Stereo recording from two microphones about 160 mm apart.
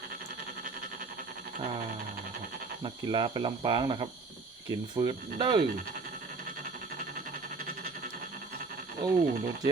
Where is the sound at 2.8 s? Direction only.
30° right (ahead or behind).